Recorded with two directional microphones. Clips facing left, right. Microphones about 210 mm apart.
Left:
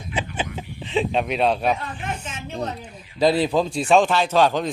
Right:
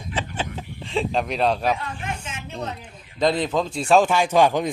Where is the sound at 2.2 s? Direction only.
35° left (ahead or behind).